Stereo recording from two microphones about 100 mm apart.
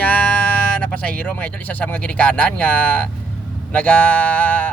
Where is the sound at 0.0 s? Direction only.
15° left (ahead or behind).